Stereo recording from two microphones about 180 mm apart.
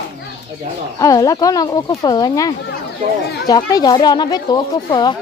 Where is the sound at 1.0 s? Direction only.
20° left (ahead or behind).